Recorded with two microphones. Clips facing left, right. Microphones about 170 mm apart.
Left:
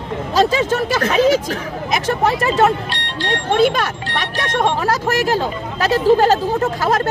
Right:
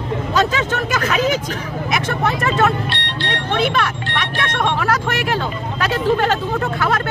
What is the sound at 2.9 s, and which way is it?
Speech, 40° left (ahead or behind).